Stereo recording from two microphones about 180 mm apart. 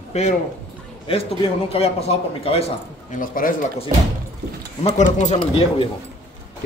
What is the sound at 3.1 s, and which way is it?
Speech, 50° left (ahead or behind).